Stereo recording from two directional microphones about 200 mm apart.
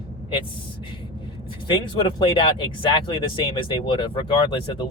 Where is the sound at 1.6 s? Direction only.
25° left (ahead or behind).